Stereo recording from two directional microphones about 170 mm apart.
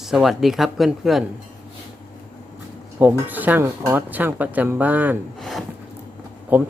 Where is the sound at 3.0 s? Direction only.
10° right (ahead or behind).